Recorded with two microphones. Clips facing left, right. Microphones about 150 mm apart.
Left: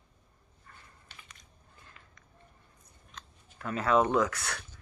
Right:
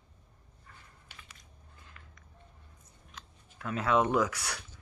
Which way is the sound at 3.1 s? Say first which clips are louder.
Left 1 dB; 5° right (ahead or behind).